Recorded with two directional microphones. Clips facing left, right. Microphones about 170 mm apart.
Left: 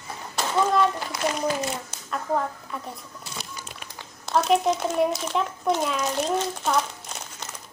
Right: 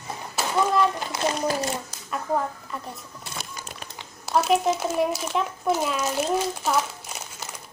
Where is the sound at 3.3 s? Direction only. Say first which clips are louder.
Right 1 dB; 55° right (ahead or behind).